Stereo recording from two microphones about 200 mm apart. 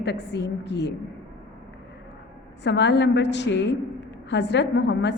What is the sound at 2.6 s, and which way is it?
A woman's voice, 60° left (ahead or behind).